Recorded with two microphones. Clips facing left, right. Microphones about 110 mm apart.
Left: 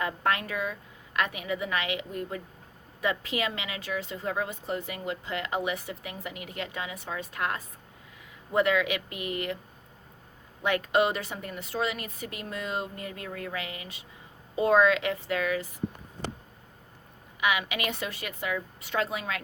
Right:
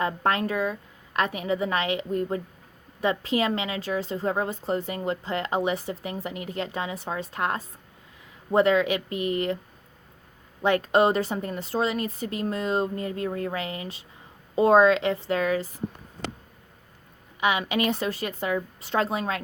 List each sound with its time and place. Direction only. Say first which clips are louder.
0.0 s a woman's voice: right 4 dB; 35° right (ahead or behind)
10.6 s a woman's voice: right 4 dB; 35° right (ahead or behind)
17.4 s a woman's voice: right 4 dB; 30° right (ahead or behind)